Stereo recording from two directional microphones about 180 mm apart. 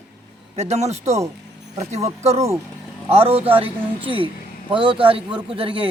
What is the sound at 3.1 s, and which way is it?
A woman's voice, 35° right (ahead or behind).